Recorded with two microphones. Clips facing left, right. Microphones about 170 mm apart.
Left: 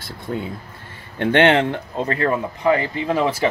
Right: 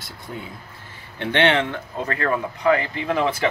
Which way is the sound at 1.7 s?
25° left (ahead or behind).